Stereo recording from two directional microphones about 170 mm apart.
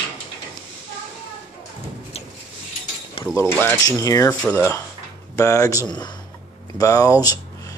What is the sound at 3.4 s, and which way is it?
Speech, 15° left (ahead or behind).